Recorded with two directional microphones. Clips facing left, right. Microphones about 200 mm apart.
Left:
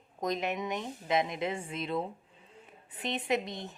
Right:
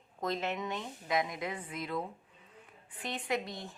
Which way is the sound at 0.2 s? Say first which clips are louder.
Left 2 dB; 15° left (ahead or behind).